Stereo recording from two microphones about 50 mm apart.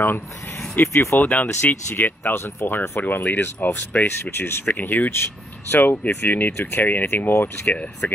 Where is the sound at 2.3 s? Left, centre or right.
Left.